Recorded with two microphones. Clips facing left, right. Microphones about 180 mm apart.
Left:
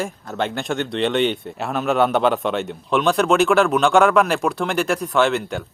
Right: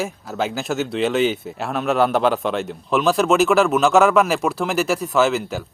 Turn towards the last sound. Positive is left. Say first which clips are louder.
# even
turn(degrees=0)  # may be behind; listen again after turning